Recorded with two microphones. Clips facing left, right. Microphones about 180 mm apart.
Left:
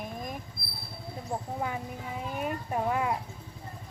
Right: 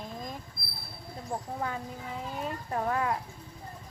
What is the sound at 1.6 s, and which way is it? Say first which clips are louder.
Speech: left 1 dB; 15° left (ahead or behind).